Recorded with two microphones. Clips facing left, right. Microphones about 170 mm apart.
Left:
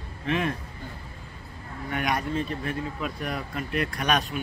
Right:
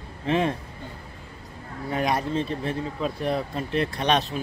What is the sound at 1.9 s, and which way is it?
A man's voice, 30° right (ahead or behind).